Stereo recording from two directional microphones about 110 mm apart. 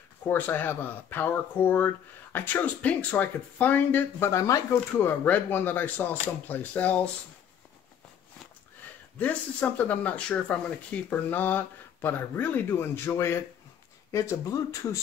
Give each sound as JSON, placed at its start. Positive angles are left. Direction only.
{"t": 0.3, "sound": "speech", "side_deg": 15}
{"t": 9.2, "sound": "speech", "side_deg": 15}